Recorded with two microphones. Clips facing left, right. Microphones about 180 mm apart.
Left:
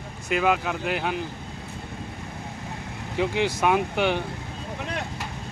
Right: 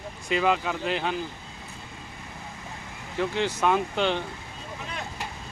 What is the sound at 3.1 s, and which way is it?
Speech, 15° left (ahead or behind).